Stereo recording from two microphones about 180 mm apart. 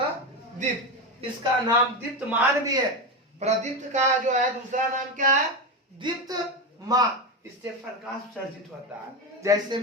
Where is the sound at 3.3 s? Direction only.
40° right (ahead or behind).